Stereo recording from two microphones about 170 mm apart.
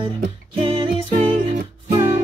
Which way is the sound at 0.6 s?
35° right (ahead or behind).